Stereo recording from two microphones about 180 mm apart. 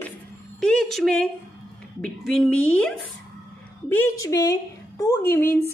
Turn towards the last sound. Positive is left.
turn(degrees=15)  # may be behind; listen again after turning